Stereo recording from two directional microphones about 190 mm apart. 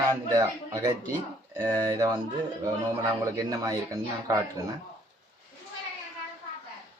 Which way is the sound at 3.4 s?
20° right (ahead or behind).